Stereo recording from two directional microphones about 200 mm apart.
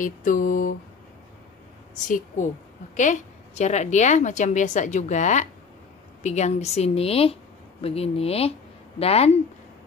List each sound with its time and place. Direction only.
0.0 s mantra: 40° left (ahead or behind)
2.0 s a woman's voice: 40° left (ahead or behind)